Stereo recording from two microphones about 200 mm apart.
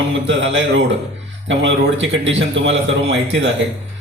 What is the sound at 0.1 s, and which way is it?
A man's voice, 65° right (ahead or behind).